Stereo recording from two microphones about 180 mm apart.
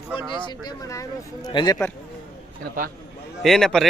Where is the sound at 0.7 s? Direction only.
20° left (ahead or behind).